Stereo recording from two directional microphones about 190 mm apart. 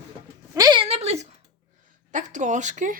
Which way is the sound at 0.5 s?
20° right (ahead or behind).